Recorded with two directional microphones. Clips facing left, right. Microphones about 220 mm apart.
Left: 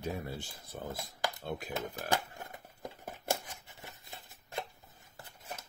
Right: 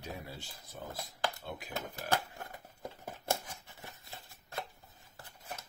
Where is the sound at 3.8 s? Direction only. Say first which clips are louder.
Even; 15° left (ahead or behind).